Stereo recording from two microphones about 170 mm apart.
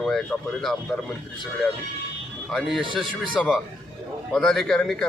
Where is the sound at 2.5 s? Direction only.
Centre (ahead or behind).